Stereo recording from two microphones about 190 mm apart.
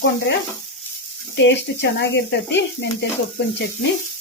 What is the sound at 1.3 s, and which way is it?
Speech, 65° left (ahead or behind).